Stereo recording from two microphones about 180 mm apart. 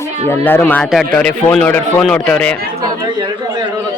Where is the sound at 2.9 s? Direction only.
25° right (ahead or behind).